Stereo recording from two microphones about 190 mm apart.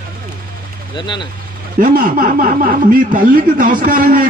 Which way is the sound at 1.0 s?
25° left (ahead or behind).